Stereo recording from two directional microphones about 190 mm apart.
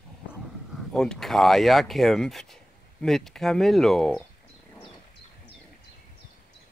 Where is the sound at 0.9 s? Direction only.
5° left (ahead or behind).